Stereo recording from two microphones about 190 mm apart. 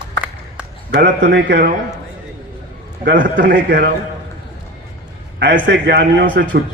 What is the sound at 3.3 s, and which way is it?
Speech, 65° right (ahead or behind).